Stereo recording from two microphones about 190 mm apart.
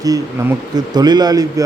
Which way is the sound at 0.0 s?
20° right (ahead or behind).